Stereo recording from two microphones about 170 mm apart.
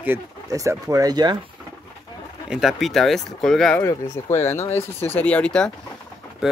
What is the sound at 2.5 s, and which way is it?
Speech, centre (ahead or behind).